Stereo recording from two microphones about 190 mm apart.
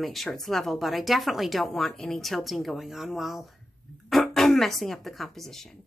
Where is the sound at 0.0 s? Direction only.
Centre (ahead or behind).